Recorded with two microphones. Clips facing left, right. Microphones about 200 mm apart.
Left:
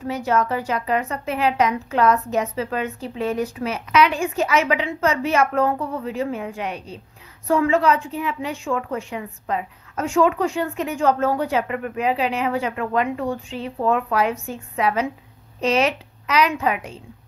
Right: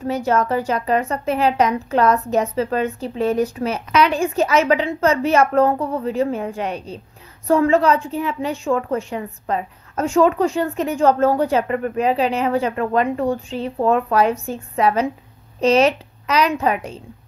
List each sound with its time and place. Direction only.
0.0 s a woman's voice: 40° right (ahead or behind)